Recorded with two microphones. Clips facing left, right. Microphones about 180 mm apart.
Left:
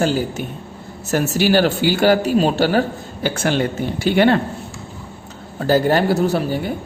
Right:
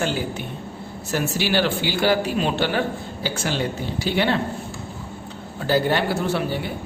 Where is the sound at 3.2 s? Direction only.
55° left (ahead or behind).